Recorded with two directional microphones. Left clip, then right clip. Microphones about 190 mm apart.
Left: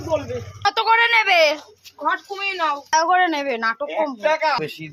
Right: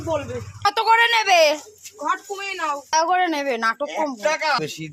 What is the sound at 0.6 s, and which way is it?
Speech, centre (ahead or behind).